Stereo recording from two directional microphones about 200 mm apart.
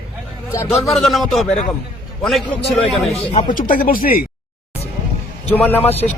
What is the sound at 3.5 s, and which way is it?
Speech, 45° left (ahead or behind).